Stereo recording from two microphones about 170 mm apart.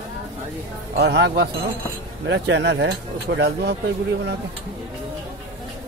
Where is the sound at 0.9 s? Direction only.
90° right.